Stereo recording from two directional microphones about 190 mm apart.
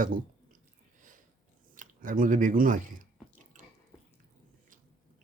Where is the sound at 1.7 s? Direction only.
45° right (ahead or behind).